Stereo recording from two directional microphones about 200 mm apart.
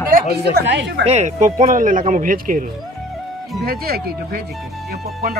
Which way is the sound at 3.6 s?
50° right (ahead or behind).